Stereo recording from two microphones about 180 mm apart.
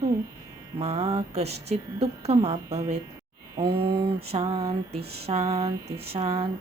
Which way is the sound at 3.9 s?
35° right (ahead or behind).